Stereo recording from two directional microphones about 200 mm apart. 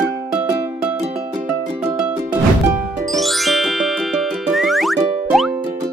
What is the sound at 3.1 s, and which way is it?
Music, centre (ahead or behind).